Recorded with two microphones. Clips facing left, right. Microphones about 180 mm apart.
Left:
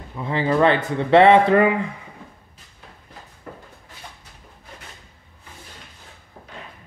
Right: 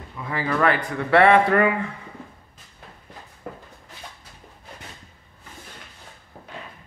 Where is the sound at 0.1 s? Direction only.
25° left (ahead or behind).